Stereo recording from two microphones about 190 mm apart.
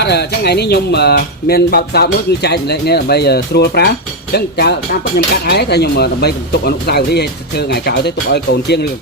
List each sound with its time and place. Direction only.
0.0 s speech: 60° left (ahead or behind)